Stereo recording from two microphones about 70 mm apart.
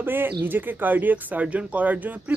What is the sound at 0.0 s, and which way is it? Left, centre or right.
Speech, right.